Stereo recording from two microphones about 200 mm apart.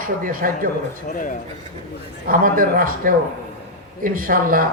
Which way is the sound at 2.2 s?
45° right (ahead or behind).